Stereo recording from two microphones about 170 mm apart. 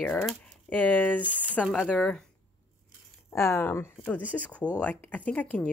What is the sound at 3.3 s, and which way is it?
Speech, 15° left (ahead or behind).